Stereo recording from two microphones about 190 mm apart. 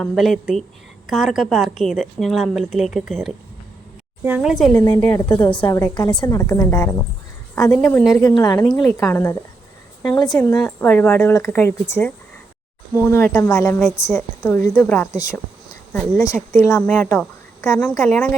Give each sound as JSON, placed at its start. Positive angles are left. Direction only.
{"t": 0.0, "sound": "speech", "side_deg": 0}
{"t": 4.7, "sound": "a woman's voice", "side_deg": 15}
{"t": 5.3, "sound": "a woman's voice", "side_deg": 25}
{"t": 8.1, "sound": "a woman's voice", "side_deg": 20}
{"t": 16.6, "sound": "a woman's voice", "side_deg": 15}